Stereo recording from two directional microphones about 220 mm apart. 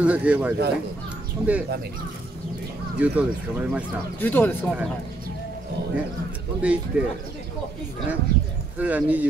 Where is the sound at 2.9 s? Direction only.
5° right (ahead or behind).